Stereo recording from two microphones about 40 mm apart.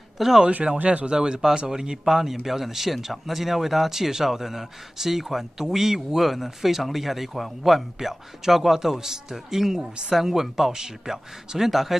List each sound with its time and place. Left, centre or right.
0.2 s speech: centre
0.8 s a man's voice: right; by 12.0 s centre